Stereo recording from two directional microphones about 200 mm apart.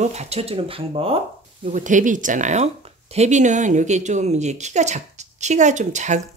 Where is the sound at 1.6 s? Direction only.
40° right (ahead or behind).